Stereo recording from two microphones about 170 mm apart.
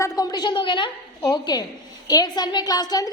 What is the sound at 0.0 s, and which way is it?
A woman's voice, 20° left (ahead or behind).